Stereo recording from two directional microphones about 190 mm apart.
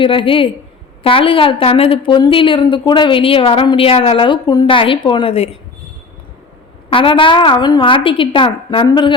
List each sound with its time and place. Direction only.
0.0 s a woman's voice: 25° left (ahead or behind)
6.9 s a woman's voice: 25° left (ahead or behind)